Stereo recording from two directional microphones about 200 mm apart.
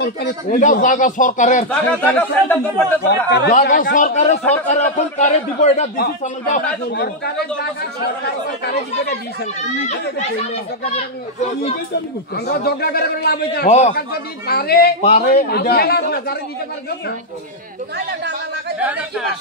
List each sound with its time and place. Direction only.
0.0 s speech: 55° left (ahead or behind)
0.6 s speech: 40° left (ahead or behind)
1.7 s speech: 5° left (ahead or behind)
3.1 s speech: 55° left (ahead or behind)
3.9 s speech: 35° left (ahead or behind)
5.9 s speech: 45° left (ahead or behind)
9.8 s speech: 35° left (ahead or behind)
11.9 s a man's voice: 55° left (ahead or behind)
13.7 s speech: 35° left (ahead or behind)
13.9 s a man's voice: 50° left (ahead or behind)
15.0 s speech: 35° left (ahead or behind)
15.5 s a man's voice: 50° left (ahead or behind)
17.9 s speech: 60° right (ahead or behind)
18.8 s a man's voice: 5° right (ahead or behind)